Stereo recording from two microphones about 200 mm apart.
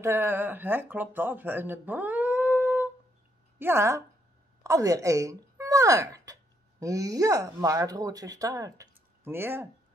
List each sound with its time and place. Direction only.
0.0 s a woman's voice: 10° right (ahead or behind)